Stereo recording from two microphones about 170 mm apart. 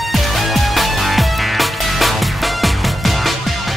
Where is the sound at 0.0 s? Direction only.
Centre (ahead or behind).